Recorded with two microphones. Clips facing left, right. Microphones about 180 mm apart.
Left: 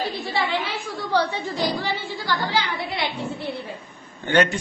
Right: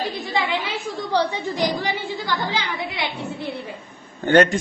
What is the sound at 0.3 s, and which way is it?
A woman's voice, 15° right (ahead or behind).